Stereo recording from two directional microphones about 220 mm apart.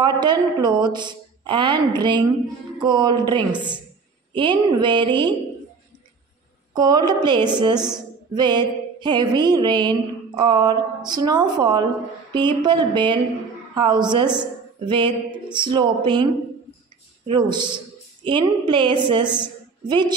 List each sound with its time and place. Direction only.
0.0 s a woman's voice: 20° right (ahead or behind)
6.7 s a woman's voice: 20° right (ahead or behind)
8.3 s music: 20° right (ahead or behind)
11.1 s a woman's voice: 20° right (ahead or behind)
17.3 s a woman's voice: 20° right (ahead or behind)
19.3 s a sound: 20° right (ahead or behind)